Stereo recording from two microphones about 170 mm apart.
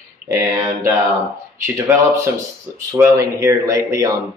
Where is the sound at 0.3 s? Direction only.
15° right (ahead or behind).